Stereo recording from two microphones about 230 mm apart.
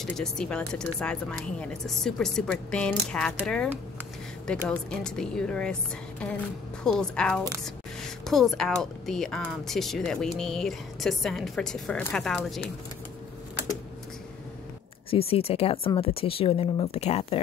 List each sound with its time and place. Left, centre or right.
0.0 s speech: centre
15.0 s speech: left